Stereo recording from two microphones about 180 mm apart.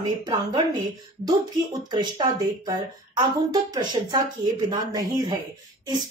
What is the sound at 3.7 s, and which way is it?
Speech, 25° right (ahead or behind).